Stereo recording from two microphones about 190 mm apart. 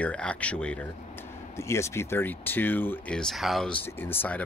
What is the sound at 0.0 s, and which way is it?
Speech, 5° left (ahead or behind).